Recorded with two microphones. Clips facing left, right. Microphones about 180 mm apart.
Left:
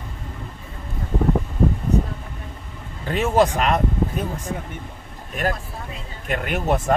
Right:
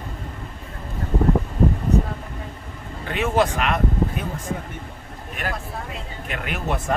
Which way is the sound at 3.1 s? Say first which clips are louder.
Left 3 dB; 40° left (ahead or behind).